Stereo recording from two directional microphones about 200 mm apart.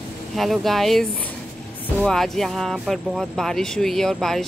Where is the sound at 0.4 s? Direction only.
Centre (ahead or behind).